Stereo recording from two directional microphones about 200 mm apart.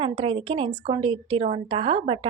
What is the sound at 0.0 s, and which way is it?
Speech, 25° right (ahead or behind).